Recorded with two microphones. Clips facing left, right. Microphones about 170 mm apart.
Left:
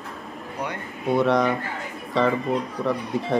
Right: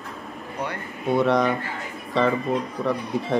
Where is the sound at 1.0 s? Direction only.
Centre (ahead or behind).